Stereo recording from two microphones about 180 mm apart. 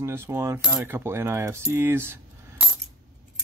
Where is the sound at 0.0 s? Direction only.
15° right (ahead or behind).